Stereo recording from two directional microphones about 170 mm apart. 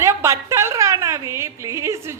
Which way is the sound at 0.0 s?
15° right (ahead or behind).